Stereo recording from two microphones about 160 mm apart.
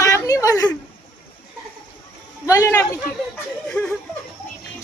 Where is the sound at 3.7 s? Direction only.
5° left (ahead or behind).